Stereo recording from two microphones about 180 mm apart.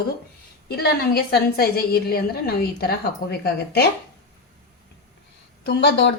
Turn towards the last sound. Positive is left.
turn(degrees=65)  # may be behind; listen again after turning